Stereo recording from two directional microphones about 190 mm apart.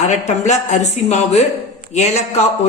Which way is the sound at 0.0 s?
35° left (ahead or behind).